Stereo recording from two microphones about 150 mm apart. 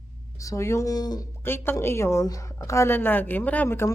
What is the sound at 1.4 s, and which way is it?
Speech, 15° left (ahead or behind).